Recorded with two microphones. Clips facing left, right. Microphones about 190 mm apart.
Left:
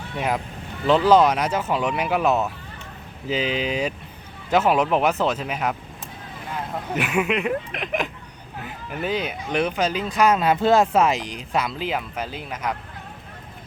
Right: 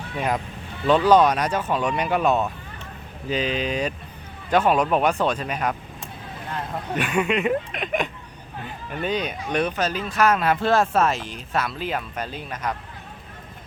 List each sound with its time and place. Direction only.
0.2 s speech: 5° left (ahead or behind)